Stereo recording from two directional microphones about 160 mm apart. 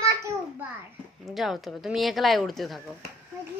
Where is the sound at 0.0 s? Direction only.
20° right (ahead or behind).